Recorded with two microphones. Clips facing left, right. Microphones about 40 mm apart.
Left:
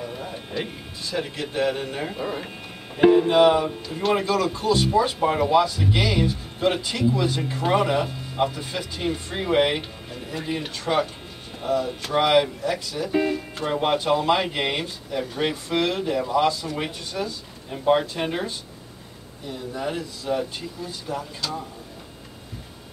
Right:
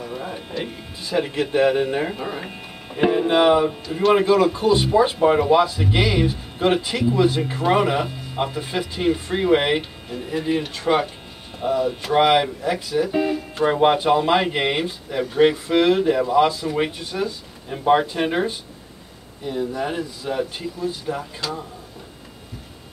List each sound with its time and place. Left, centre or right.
0.0 s a sound: centre
0.6 s speech: centre
1.0 s speech: centre
2.1 s speech: centre
4.1 s speech: centre
13.1 s speech: centre
13.7 s speech: centre